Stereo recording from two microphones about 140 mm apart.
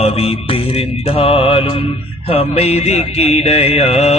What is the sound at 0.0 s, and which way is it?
Music, 45° left (ahead or behind).